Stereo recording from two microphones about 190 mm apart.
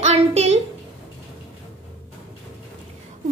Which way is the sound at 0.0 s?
35° right (ahead or behind).